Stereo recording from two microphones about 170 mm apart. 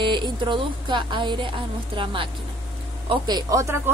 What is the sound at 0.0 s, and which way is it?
Speech, 30° right (ahead or behind).